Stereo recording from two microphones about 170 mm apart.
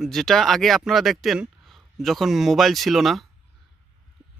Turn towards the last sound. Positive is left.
turn(degrees=0)  # may be behind; listen again after turning